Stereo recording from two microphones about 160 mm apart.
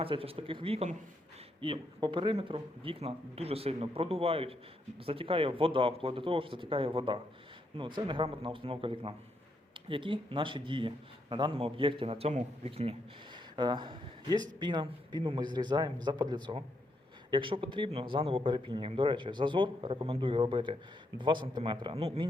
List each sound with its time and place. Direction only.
0.0 s a man's voice: 35° right (ahead or behind)